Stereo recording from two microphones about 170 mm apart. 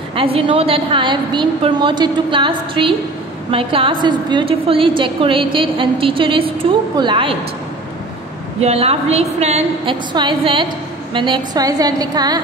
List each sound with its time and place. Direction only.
0.1 s a woman's voice: 35° right (ahead or behind)
8.5 s a woman's voice: 40° right (ahead or behind)
10.1 s a woman's voice: 30° right (ahead or behind)